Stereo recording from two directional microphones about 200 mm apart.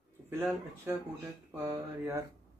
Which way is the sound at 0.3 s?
10° right (ahead or behind).